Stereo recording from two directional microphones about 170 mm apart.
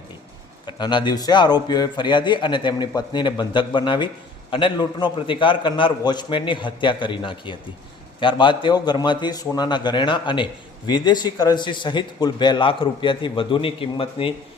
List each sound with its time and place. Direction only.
0.6 s a man's voice: 25° left (ahead or behind)